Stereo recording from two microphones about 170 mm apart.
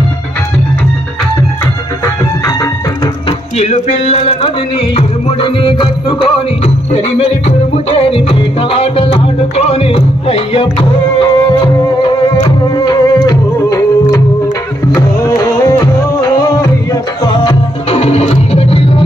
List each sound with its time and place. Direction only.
3.3 s music: 40° left (ahead or behind); by 17.6 s 25° left (ahead or behind)
17.8 s music: 40° left (ahead or behind)